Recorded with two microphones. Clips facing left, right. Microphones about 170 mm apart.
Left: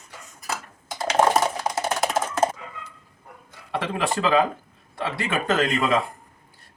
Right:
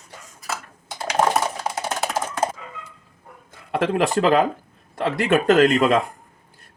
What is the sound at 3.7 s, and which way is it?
Speech, 45° right (ahead or behind).